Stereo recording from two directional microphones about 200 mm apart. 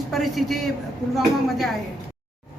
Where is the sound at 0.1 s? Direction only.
Centre (ahead or behind).